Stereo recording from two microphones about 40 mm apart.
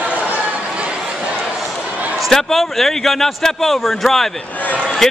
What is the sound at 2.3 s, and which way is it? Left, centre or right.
Speech, centre.